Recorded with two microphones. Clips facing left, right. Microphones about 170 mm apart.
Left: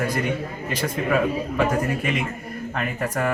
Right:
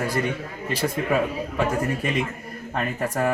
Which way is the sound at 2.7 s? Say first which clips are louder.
Right 1 dB; 35° right (ahead or behind).